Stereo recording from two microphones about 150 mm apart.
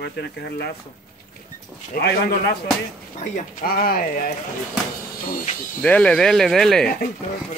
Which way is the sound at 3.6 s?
75° left (ahead or behind).